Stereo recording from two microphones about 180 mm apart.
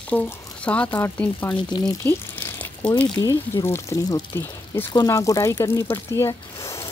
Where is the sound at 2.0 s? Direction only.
10° left (ahead or behind).